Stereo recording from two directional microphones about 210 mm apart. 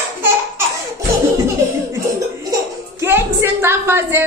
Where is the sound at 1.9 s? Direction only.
15° right (ahead or behind).